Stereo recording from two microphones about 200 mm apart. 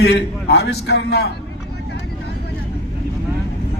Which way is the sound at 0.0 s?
55° left (ahead or behind).